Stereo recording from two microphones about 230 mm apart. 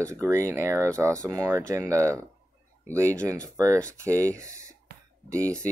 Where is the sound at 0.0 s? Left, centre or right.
Centre.